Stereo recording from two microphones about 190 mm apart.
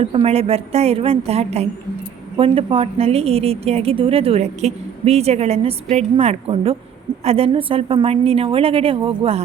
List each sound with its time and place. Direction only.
0.0 s a woman's voice: 30° right (ahead or behind)